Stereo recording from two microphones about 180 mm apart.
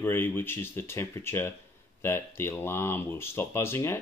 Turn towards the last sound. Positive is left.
turn(degrees=15)  # may be behind; listen again after turning